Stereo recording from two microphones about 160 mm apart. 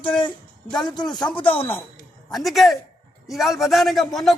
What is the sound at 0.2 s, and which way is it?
Speech, 30° left (ahead or behind).